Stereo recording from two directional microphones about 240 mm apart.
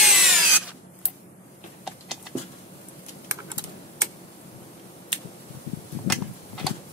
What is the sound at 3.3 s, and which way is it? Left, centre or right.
Typing, centre.